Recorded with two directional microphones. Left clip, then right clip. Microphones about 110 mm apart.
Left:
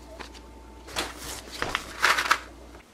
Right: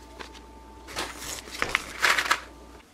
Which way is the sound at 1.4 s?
5° right (ahead or behind).